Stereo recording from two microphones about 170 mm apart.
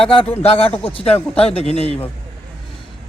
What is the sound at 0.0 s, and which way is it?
A man's voice, 30° left (ahead or behind).